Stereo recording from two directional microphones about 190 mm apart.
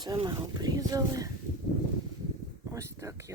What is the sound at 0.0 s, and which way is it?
Speech, 25° right (ahead or behind).